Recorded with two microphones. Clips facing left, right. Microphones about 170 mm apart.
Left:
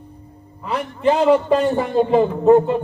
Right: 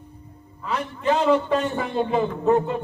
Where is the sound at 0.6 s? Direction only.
35° left (ahead or behind).